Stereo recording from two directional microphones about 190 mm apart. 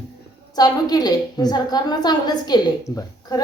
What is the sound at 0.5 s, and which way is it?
A woman's voice, 20° left (ahead or behind).